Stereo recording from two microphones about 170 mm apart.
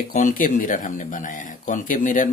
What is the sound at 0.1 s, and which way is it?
Speech, 50° left (ahead or behind).